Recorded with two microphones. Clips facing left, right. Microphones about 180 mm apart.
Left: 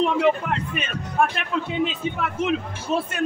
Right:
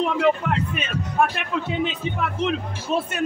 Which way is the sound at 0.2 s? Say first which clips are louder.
Right 1 dB; centre (ahead or behind).